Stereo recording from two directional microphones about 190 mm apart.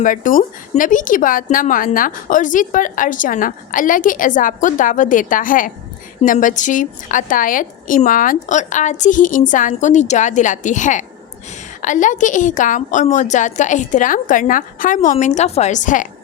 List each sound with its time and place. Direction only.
0.0 s a woman's voice: 45° left (ahead or behind)